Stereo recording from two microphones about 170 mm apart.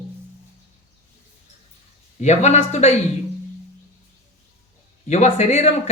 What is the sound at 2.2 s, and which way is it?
Speech, 40° left (ahead or behind).